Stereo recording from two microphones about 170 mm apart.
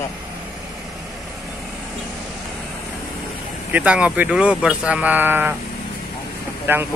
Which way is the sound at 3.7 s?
10° right (ahead or behind).